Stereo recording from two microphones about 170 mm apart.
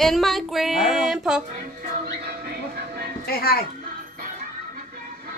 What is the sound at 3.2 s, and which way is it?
Speech, 65° left (ahead or behind).